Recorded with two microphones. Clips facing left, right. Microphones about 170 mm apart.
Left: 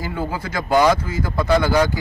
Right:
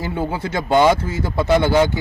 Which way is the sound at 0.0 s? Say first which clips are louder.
Right 3 dB; 25° right (ahead or behind).